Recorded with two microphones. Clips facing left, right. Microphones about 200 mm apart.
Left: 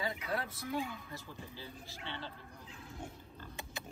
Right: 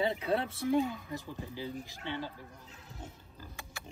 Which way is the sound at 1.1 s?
15° right (ahead or behind).